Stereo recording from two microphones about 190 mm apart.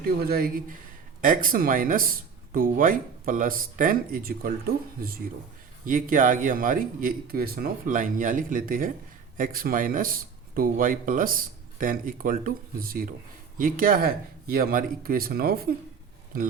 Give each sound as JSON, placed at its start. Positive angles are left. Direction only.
{"t": 0.2, "sound": "speech", "side_deg": -55}
{"t": 5.8, "sound": "speech", "side_deg": -45}